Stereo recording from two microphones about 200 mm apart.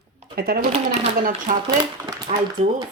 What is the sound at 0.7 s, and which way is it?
Speech, 30° right (ahead or behind).